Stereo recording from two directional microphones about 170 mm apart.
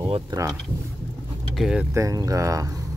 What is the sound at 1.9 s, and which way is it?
Speech, 20° right (ahead or behind).